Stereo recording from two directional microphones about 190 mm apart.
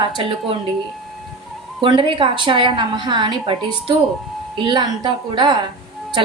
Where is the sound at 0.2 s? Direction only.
30° right (ahead or behind).